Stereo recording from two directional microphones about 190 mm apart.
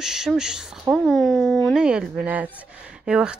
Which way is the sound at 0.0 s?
5° right (ahead or behind).